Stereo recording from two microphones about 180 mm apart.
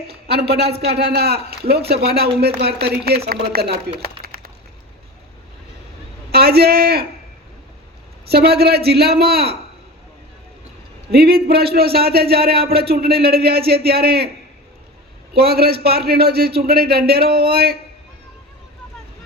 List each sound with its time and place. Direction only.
0.3 s a man's voice: 65° right (ahead or behind)
4.2 s a sound: 55° right (ahead or behind)
6.3 s a man's voice: 60° right (ahead or behind)
8.3 s a man's voice: 60° right (ahead or behind)
11.1 s a man's voice: 60° right (ahead or behind)
15.4 s a man's voice: 60° right (ahead or behind)